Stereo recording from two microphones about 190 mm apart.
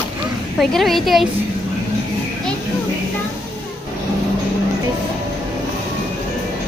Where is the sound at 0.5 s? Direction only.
Centre (ahead or behind).